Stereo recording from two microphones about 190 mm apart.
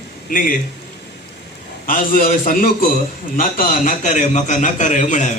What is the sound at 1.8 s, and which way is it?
A man's voice, 45° left (ahead or behind).